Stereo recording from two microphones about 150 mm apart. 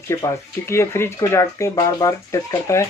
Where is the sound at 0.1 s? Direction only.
20° left (ahead or behind).